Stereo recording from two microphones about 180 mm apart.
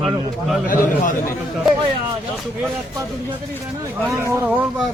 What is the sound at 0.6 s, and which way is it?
Speech, 45° left (ahead or behind).